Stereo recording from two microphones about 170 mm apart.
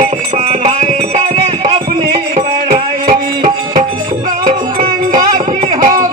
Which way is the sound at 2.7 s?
50° right (ahead or behind).